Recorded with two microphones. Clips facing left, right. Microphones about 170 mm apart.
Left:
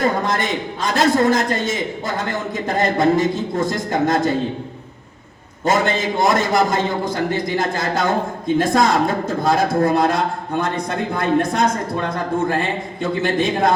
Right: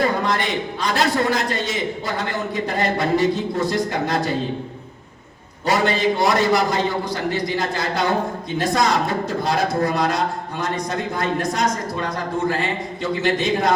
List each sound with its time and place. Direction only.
0.0 s a man's voice: 45° left (ahead or behind)
5.6 s a man's voice: 45° left (ahead or behind)